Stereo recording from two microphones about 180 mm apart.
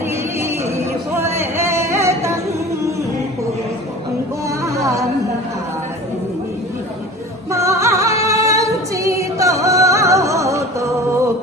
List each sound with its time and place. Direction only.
0.4 s singing: 15° right (ahead or behind)
4.7 s music: 20° right (ahead or behind)
7.5 s singing: 15° right (ahead or behind)